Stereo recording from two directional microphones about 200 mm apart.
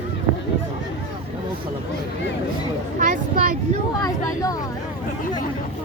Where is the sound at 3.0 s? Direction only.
40° right (ahead or behind).